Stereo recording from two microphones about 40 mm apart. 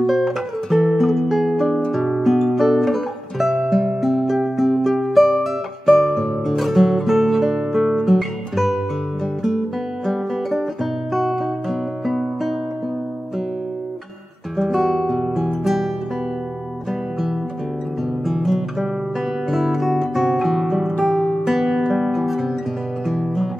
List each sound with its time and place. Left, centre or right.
0.0 s music: centre
7.9 s guitar: centre
10.0 s music: centre
14.6 s guitar: centre
18.2 s guitar: centre
19.5 s music: centre
21.5 s guitar: centre
23.0 s music: centre